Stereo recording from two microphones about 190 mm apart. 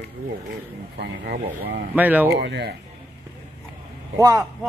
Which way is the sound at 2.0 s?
10° right (ahead or behind).